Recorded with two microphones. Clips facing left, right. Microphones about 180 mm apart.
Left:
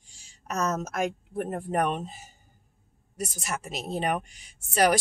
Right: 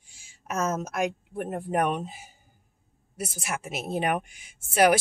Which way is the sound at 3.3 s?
5° right (ahead or behind).